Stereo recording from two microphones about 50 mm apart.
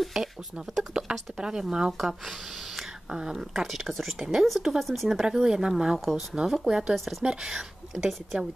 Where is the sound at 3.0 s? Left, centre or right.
Centre.